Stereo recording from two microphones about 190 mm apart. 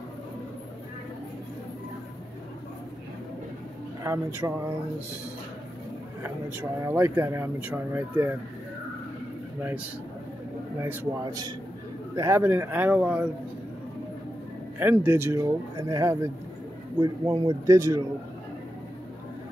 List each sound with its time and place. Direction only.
4.0 s speech: 15° right (ahead or behind)
6.2 s speech: 10° right (ahead or behind)
10.8 s speech: 15° right (ahead or behind)
14.8 s speech: 10° right (ahead or behind)